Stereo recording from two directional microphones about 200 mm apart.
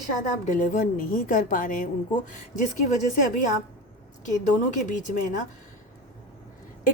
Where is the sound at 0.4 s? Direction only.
40° left (ahead or behind).